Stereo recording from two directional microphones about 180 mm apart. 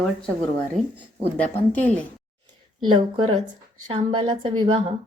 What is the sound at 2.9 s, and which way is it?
Speech, 25° right (ahead or behind).